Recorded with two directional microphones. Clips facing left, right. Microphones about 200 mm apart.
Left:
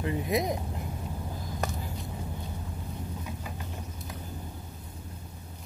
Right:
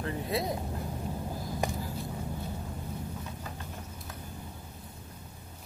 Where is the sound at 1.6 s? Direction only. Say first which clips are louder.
Right 1 dB; 15° right (ahead or behind).